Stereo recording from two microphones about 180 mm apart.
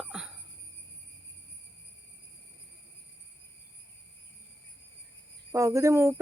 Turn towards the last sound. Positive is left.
turn(degrees=-15)  # may be behind; listen again after turning